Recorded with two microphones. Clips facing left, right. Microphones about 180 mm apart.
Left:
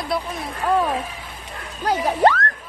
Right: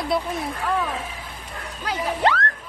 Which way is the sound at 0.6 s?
45° left (ahead or behind).